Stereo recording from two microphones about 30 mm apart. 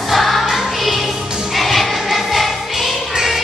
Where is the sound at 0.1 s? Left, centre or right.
Centre.